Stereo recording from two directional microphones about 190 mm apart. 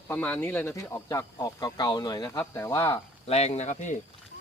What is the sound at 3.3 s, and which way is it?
Speech, 35° left (ahead or behind).